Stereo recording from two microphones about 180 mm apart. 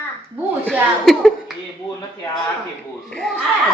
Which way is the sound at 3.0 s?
5° left (ahead or behind).